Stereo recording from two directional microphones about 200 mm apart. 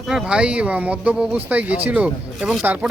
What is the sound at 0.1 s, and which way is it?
Speech, 5° right (ahead or behind).